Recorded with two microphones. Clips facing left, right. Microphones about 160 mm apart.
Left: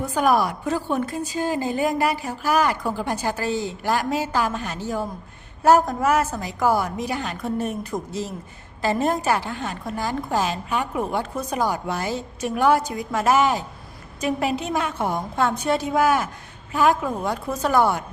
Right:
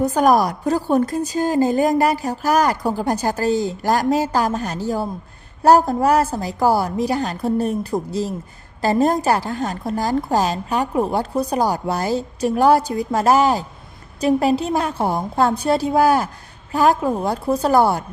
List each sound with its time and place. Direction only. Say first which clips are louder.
0.0 s a woman's voice: right 5 dB; 40° right (ahead or behind)